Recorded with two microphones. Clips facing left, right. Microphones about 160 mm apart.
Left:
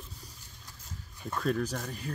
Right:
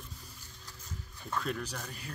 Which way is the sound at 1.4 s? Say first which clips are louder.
Left 7 dB; 45° left (ahead or behind).